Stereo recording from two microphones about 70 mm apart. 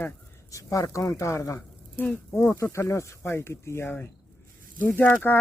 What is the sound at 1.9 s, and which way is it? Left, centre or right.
Speech, left.